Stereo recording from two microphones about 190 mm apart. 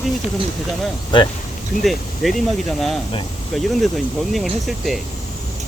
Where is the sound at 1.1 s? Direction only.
25° left (ahead or behind).